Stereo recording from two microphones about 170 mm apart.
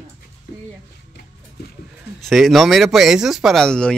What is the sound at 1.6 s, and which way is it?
Speech, 75° left (ahead or behind).